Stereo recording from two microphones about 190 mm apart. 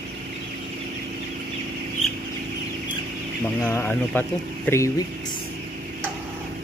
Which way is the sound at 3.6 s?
10° left (ahead or behind).